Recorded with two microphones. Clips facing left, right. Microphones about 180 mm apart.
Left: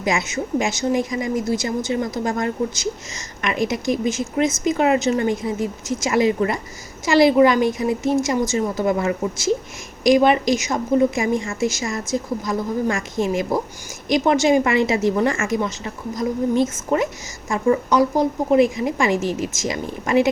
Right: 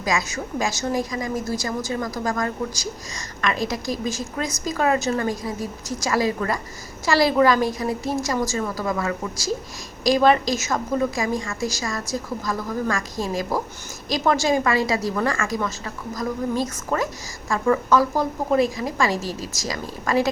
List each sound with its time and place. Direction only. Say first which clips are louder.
0.0 s a woman's voice: left 3 dB; 25° left (ahead or behind)